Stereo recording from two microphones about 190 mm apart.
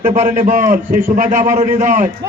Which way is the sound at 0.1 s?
40° right (ahead or behind).